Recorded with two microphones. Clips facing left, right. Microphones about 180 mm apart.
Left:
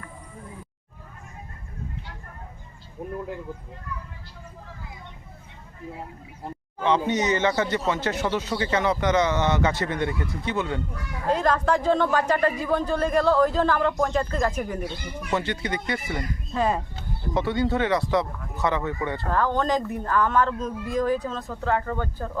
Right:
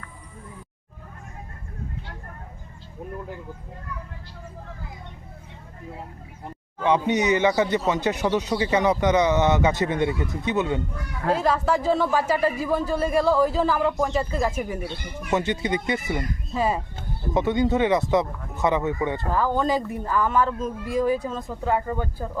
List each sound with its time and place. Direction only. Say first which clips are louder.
6.8 s speech: right 2 dB; 15° right (ahead or behind)
11.3 s speech: even; 5° right (ahead or behind)
15.3 s speech: right 3 dB; 20° right (ahead or behind)
16.6 s speech: even; 5° right (ahead or behind)
17.3 s speech: right 3 dB; 20° right (ahead or behind)